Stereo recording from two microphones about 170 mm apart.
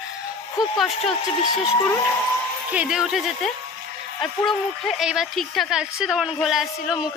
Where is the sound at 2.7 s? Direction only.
5° right (ahead or behind).